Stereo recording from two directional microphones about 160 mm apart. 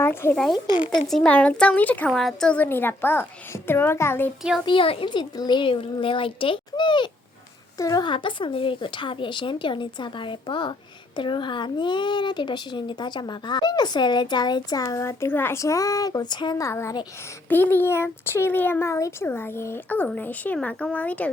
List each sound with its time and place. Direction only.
0.0 s speech: 15° left (ahead or behind)
1.0 s speech: 5° left (ahead or behind)
4.6 s a woman's voice: 35° left (ahead or behind); by 21.2 s 10° left (ahead or behind)